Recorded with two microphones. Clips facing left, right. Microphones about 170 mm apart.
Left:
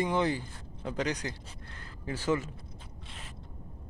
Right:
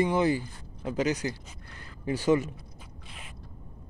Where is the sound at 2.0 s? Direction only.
15° right (ahead or behind).